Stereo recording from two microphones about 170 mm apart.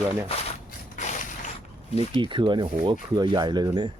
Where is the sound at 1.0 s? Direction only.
45° left (ahead or behind).